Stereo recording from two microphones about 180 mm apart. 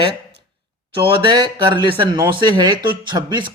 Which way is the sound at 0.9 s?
25° right (ahead or behind).